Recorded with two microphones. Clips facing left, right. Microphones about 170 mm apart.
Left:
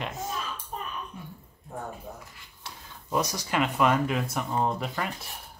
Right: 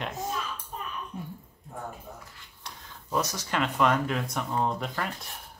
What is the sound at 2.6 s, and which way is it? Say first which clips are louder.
Speech: left 1 dB; 10° left (ahead or behind).